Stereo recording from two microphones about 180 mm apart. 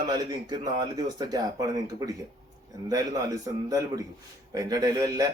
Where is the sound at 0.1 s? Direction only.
20° right (ahead or behind).